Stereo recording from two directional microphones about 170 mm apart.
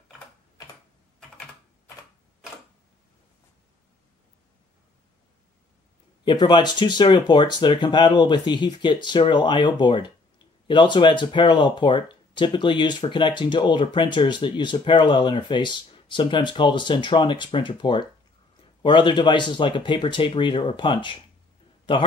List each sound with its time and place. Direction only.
6.2 s speech: 25° left (ahead or behind)